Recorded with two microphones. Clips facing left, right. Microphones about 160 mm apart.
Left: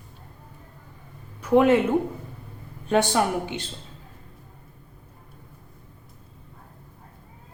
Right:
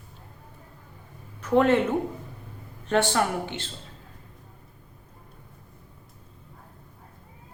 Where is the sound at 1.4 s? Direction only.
10° left (ahead or behind).